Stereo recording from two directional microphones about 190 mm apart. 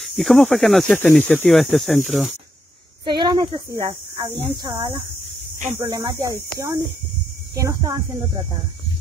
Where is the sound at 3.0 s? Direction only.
25° right (ahead or behind).